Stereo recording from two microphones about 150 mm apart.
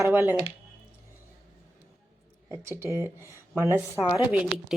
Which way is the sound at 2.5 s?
20° right (ahead or behind).